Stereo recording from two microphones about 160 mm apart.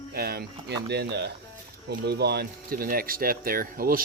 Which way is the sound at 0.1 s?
80° right.